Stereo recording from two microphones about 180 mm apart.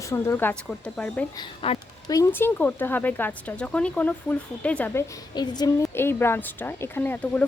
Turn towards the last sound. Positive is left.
turn(degrees=10)  # may be behind; listen again after turning